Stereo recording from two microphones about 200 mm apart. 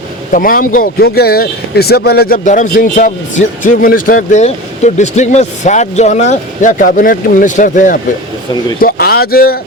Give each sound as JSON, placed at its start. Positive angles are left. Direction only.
{"t": 0.3, "sound": "speech", "side_deg": 45}
{"t": 8.8, "sound": "speech", "side_deg": 50}